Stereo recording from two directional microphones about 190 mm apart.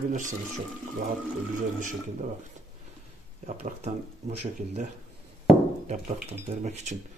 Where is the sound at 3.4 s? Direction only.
35° right (ahead or behind).